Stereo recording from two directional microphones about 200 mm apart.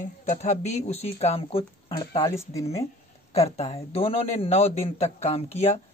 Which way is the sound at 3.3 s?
30° left (ahead or behind).